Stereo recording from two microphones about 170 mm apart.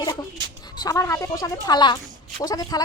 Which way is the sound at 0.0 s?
25° left (ahead or behind).